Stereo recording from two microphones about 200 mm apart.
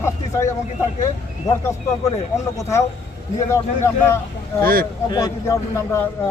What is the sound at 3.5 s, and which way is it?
Speech, 15° left (ahead or behind).